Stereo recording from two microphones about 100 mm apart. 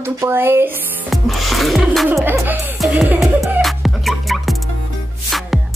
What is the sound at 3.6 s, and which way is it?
Music, centre (ahead or behind).